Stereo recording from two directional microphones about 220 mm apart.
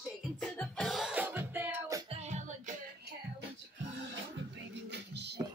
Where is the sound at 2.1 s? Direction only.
30° right (ahead or behind).